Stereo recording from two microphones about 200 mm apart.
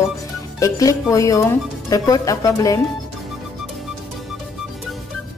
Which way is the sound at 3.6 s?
Centre (ahead or behind).